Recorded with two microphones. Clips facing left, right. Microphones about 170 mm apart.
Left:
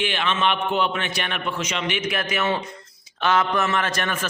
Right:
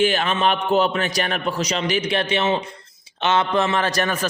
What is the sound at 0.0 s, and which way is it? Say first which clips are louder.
A man's voice: right 4 dB; 40° right (ahead or behind).